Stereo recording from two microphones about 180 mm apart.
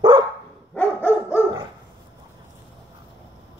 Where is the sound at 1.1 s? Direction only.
10° right (ahead or behind).